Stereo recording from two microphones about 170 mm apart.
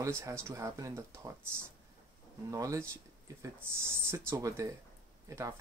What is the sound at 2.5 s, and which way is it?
Speech, 20° right (ahead or behind).